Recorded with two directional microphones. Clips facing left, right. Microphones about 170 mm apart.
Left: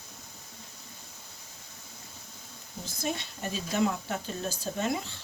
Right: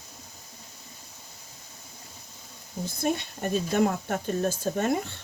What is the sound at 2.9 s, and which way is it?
Speech, 55° right (ahead or behind).